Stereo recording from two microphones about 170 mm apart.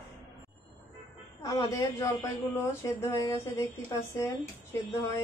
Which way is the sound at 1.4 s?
20° left (ahead or behind).